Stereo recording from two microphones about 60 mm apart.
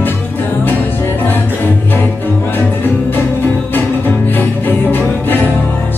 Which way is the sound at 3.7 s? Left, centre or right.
Left.